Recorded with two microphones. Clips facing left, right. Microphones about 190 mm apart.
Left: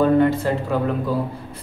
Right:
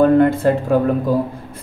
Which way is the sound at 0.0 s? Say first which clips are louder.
Right 4 dB; 50° right (ahead or behind).